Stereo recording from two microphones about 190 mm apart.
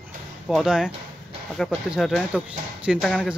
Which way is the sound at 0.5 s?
Centre (ahead or behind).